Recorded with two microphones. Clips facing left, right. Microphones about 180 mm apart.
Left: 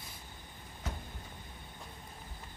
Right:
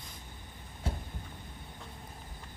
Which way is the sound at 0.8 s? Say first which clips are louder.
Right 4 dB; 30° right (ahead or behind).